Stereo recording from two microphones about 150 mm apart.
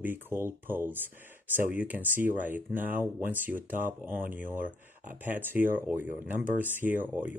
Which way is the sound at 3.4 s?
65° right (ahead or behind).